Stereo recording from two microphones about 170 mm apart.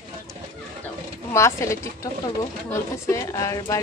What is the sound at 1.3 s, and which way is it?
Speech, 15° left (ahead or behind).